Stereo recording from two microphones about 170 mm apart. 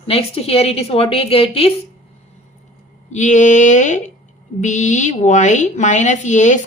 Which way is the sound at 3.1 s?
45° left (ahead or behind).